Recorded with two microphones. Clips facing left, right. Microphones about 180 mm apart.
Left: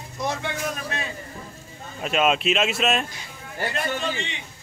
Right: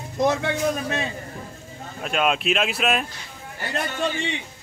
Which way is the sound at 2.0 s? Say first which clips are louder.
Left 1 dB; centre (ahead or behind).